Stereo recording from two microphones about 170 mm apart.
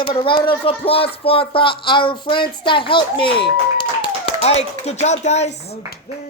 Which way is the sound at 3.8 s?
30° left (ahead or behind).